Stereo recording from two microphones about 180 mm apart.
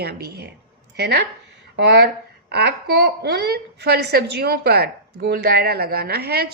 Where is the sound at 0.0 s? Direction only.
65° right (ahead or behind).